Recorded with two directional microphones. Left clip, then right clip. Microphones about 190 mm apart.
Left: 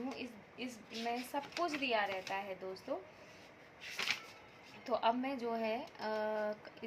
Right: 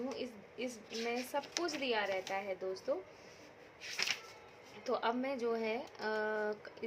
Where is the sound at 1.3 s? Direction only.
30° right (ahead or behind).